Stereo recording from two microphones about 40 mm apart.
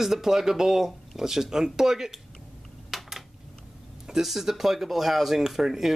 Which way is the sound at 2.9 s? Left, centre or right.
Centre.